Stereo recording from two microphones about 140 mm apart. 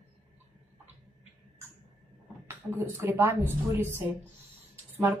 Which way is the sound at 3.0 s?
15° right (ahead or behind).